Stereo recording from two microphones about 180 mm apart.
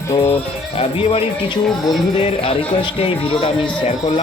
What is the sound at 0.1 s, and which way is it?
Speech, 35° left (ahead or behind).